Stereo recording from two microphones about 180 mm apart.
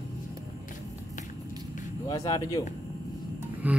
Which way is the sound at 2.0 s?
20° left (ahead or behind).